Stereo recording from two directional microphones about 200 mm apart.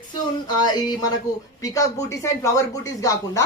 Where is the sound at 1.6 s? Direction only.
15° left (ahead or behind).